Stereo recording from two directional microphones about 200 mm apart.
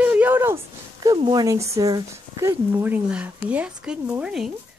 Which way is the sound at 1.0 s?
20° right (ahead or behind).